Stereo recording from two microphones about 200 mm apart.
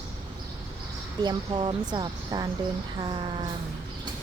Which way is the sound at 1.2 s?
20° right (ahead or behind).